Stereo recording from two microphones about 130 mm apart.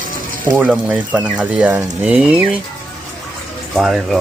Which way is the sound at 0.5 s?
5° right (ahead or behind).